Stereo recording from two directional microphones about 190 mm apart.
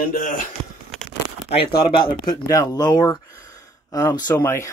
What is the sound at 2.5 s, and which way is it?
Speech, 20° left (ahead or behind).